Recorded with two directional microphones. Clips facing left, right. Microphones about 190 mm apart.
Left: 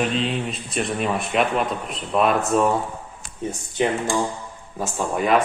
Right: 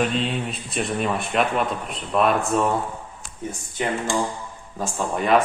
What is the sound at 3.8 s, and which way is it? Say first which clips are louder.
Speech: left 4 dB; 20° left (ahead or behind).